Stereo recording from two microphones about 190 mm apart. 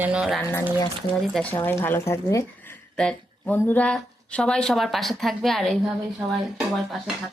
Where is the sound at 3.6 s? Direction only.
10° left (ahead or behind).